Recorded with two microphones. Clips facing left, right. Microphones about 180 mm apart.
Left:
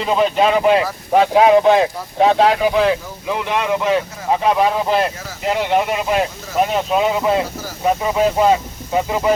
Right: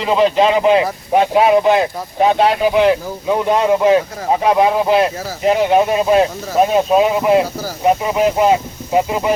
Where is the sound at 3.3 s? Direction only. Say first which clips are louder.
Right 5 dB; 35° right (ahead or behind).